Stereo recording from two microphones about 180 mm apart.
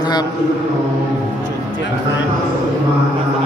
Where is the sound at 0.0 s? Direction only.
25° left (ahead or behind).